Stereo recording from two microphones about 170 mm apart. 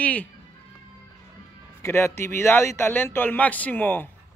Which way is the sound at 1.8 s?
15° left (ahead or behind).